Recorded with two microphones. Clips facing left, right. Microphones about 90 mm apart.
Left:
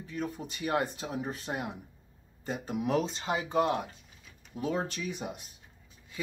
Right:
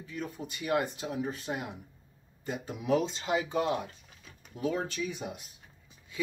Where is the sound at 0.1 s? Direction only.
40° left (ahead or behind).